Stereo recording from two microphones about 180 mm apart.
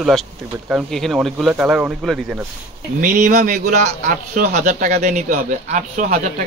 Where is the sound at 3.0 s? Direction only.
45° right (ahead or behind).